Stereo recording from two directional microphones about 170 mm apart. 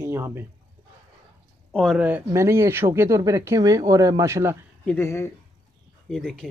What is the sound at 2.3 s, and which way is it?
Speech, 15° right (ahead or behind).